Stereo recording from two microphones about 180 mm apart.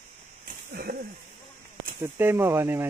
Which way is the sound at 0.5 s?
60° right (ahead or behind).